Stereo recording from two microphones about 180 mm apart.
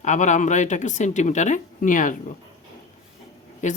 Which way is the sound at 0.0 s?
40° left (ahead or behind).